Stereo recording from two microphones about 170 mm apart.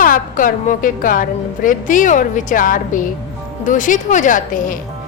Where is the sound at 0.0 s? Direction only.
55° left (ahead or behind).